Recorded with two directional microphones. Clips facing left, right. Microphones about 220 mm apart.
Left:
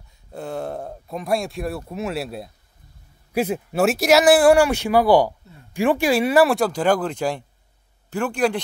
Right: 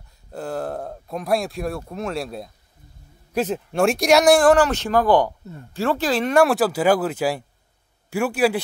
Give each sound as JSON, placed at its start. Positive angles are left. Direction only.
{"t": 0.3, "sound": "speech", "side_deg": 0}